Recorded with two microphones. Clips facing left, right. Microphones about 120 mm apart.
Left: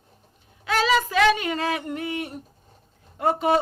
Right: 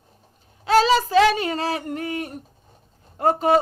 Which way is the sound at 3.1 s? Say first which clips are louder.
Right 3 dB; 40° right (ahead or behind).